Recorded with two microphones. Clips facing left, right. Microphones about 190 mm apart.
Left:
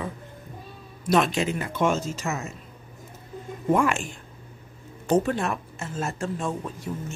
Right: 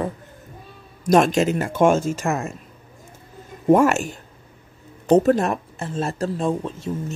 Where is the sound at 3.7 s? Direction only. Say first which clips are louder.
Right 7 dB; 40° right (ahead or behind).